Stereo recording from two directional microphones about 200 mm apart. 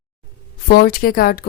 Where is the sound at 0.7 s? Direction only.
50° left (ahead or behind).